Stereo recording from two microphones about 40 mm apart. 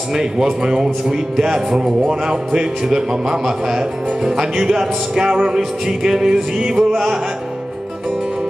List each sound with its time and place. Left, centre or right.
0.1 s speech: centre